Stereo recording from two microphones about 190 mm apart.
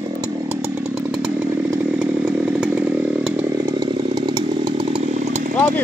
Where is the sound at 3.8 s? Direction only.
20° right (ahead or behind).